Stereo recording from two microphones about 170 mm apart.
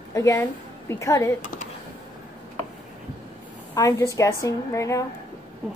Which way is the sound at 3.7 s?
20° left (ahead or behind).